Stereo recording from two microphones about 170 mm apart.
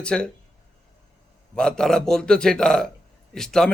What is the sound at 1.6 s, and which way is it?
A man's voice, 5° left (ahead or behind).